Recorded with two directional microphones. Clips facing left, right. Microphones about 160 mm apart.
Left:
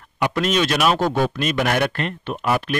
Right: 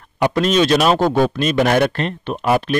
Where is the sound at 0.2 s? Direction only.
35° right (ahead or behind).